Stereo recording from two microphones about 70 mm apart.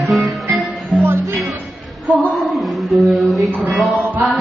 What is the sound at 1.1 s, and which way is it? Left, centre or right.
Music, right.